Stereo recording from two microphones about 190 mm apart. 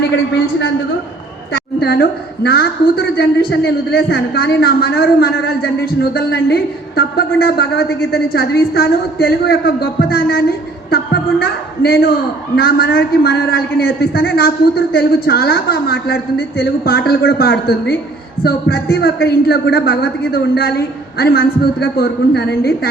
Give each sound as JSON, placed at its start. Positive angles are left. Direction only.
{"t": 1.5, "sound": "a woman's voice", "side_deg": 55}